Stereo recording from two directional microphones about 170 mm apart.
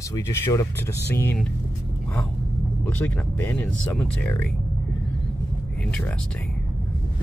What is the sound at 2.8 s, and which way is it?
Speech, 10° left (ahead or behind).